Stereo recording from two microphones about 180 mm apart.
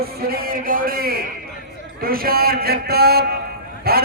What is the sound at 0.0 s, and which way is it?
A man's voice, 55° right (ahead or behind).